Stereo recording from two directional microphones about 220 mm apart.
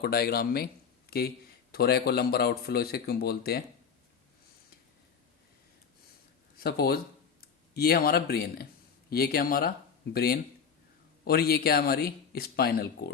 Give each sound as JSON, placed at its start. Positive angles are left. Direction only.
{"t": 0.0, "sound": "speech", "side_deg": 45}
{"t": 1.7, "sound": "speech", "side_deg": 45}
{"t": 6.6, "sound": "speech", "side_deg": 45}